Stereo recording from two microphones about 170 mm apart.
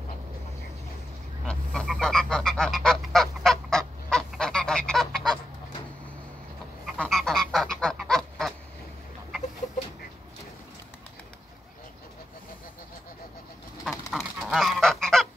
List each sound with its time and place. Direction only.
1.4 s goose: 5° left (ahead or behind)
7.0 s goose: centre (ahead or behind)
13.8 s goose: centre (ahead or behind)